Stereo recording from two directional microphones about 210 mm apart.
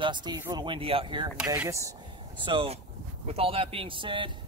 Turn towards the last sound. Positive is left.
turn(degrees=-25)  # may be behind; listen again after turning